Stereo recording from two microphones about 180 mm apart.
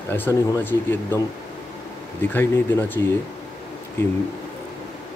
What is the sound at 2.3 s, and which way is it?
Speech, 10° left (ahead or behind).